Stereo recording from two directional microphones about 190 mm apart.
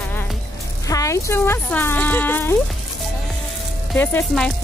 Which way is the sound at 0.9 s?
15° left (ahead or behind).